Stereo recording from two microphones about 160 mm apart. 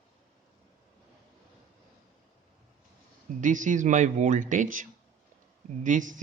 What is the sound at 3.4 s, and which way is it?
Speech, 55° right (ahead or behind).